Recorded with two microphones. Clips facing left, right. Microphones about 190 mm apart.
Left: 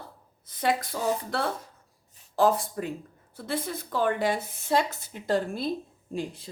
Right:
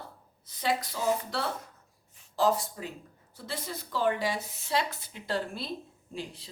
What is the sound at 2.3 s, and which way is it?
A woman's voice, 55° left (ahead or behind).